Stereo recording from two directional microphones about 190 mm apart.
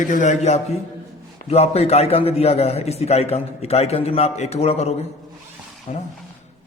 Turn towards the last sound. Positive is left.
turn(degrees=35)  # may be behind; listen again after turning